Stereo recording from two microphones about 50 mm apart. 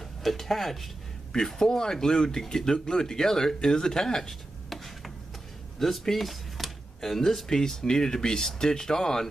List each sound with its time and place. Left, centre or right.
0.2 s speech: centre